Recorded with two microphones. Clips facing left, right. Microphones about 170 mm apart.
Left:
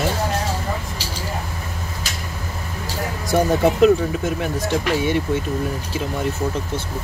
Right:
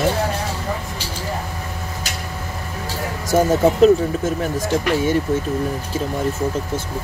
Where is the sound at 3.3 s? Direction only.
40° right (ahead or behind).